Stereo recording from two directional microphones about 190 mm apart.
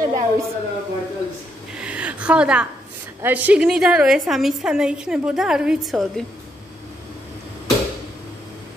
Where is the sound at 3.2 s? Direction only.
10° right (ahead or behind).